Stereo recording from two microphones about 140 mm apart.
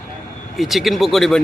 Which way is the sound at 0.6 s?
Centre (ahead or behind).